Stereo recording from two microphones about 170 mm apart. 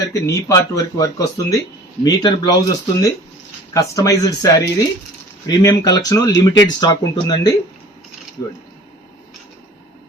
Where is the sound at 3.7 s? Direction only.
20° left (ahead or behind).